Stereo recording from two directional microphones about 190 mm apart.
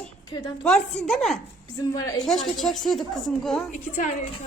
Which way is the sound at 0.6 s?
5° left (ahead or behind).